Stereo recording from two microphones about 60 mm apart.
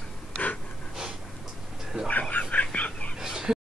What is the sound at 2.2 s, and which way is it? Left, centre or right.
Whispering, left.